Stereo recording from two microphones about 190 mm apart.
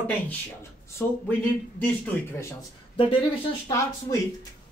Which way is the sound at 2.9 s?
30° left (ahead or behind).